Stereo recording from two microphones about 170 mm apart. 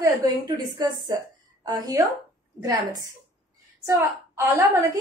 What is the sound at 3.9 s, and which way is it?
Speech, 15° right (ahead or behind).